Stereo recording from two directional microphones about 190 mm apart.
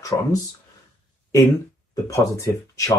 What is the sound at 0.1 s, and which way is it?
Speech, 20° left (ahead or behind).